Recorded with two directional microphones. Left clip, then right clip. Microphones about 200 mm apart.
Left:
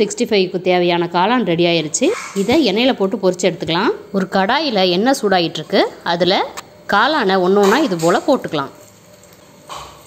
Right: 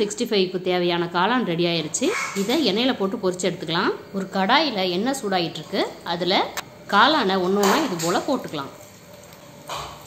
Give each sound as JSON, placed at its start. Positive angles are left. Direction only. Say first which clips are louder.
{"t": 0.0, "sound": "a woman's voice", "louder": "left 6 dB", "side_deg": 30}